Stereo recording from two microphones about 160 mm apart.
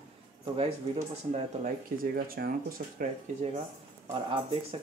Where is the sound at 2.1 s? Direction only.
70° right (ahead or behind).